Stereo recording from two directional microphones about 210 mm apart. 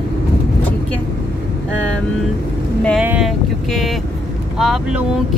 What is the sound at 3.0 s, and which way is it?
Speech, 5° right (ahead or behind).